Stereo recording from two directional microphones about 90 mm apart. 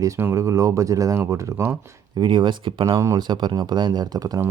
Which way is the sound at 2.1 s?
60° right (ahead or behind).